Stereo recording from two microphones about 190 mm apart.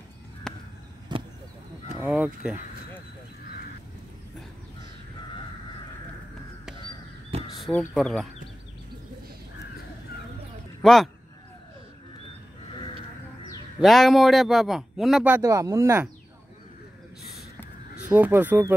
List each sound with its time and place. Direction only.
0.5 s a sound: 5° left (ahead or behind)
1.1 s arrow: 25° right (ahead or behind)
2.0 s speech: 5° right (ahead or behind)
7.5 s a sound: centre (ahead or behind)
7.9 s speech: centre (ahead or behind)
10.8 s a man's voice: centre (ahead or behind)
13.7 s speech: centre (ahead or behind)
18.0 s speech: 10° right (ahead or behind)